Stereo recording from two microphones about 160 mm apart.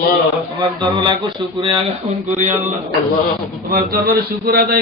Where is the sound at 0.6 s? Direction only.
25° right (ahead or behind).